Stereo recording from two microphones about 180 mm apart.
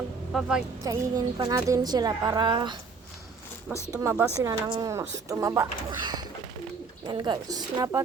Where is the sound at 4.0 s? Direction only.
15° right (ahead or behind).